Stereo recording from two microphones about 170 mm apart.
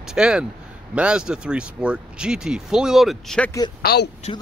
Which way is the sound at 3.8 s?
70° left (ahead or behind).